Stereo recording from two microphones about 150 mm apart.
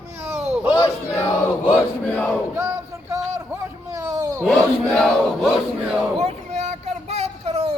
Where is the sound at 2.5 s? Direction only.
15° right (ahead or behind).